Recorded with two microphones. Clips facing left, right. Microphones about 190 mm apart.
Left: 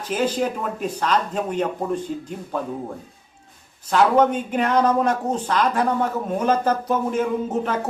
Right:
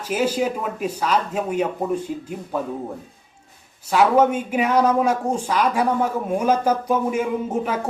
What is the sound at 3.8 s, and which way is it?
Speech, 10° right (ahead or behind).